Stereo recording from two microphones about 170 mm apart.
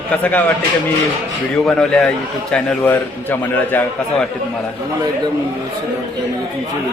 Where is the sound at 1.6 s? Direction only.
5° left (ahead or behind).